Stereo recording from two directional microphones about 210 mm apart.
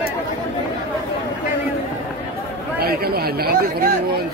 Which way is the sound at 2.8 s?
45° right (ahead or behind).